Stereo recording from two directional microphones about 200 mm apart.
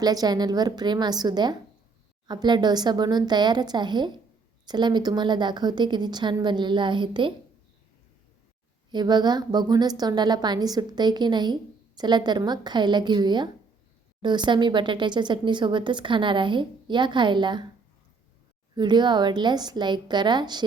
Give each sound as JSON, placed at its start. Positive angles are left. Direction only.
{"t": 0.0, "sound": "a woman's voice", "side_deg": -20}
{"t": 8.9, "sound": "a woman's voice", "side_deg": -20}
{"t": 18.8, "sound": "a woman's voice", "side_deg": -20}